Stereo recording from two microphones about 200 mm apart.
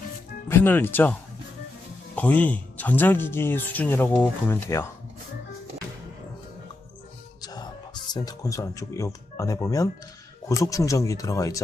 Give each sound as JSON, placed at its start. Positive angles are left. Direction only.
{"t": 0.4, "sound": "speech", "side_deg": 10}
{"t": 2.1, "sound": "speech", "side_deg": 10}
{"t": 7.4, "sound": "music", "side_deg": 20}
{"t": 8.1, "sound": "speech", "side_deg": 20}